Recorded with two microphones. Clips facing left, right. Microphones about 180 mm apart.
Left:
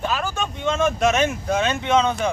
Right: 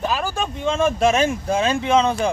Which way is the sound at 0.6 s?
30° right (ahead or behind).